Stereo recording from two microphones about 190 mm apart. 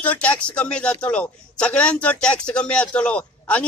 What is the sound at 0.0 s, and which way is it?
A man's voice, 10° left (ahead or behind).